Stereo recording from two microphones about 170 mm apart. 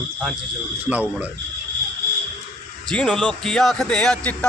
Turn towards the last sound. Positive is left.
turn(degrees=10)  # may be behind; listen again after turning